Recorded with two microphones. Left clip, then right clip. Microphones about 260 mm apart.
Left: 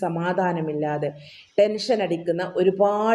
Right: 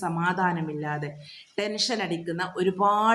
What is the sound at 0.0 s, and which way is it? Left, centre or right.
Speech, centre.